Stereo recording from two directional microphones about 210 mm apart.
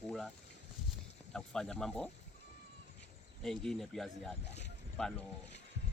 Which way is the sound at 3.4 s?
Centre (ahead or behind).